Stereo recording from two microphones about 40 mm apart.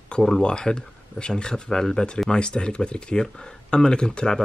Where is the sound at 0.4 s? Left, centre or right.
Left.